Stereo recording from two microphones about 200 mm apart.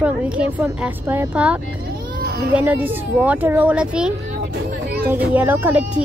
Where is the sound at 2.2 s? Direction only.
50° right (ahead or behind).